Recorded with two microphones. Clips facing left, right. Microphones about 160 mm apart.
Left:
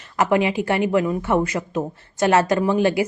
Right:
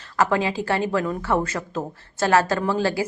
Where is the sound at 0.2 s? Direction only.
20° left (ahead or behind).